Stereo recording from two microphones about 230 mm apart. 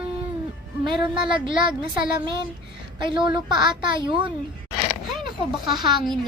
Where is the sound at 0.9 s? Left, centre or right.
Right.